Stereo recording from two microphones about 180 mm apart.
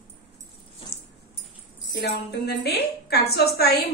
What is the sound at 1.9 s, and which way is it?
A woman's voice, 70° left (ahead or behind).